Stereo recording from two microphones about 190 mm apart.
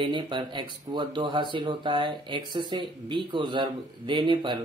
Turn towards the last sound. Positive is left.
turn(degrees=-25)  # may be behind; listen again after turning